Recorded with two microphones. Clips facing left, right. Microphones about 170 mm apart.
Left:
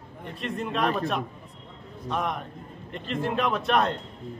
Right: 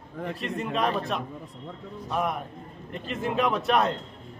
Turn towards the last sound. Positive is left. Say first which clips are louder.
# even
turn(degrees=0)  # may be behind; listen again after turning